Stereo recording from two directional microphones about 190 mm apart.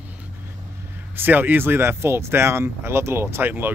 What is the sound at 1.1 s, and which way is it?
Speech, 10° right (ahead or behind).